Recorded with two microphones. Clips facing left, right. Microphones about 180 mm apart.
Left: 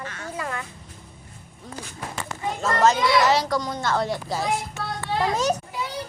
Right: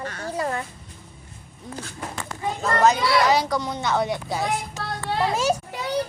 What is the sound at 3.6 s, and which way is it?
Speech, 20° right (ahead or behind).